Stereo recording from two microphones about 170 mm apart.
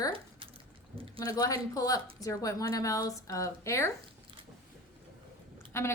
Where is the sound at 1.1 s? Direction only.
20° left (ahead or behind).